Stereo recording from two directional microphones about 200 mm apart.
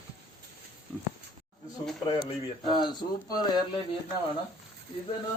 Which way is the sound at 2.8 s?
20° left (ahead or behind).